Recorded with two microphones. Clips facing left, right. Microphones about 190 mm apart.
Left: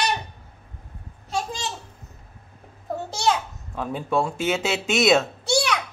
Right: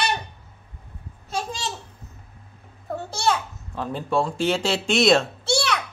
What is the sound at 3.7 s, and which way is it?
Speech, 5° left (ahead or behind).